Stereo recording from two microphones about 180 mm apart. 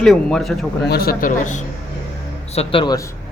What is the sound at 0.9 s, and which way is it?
Speech, 55° left (ahead or behind).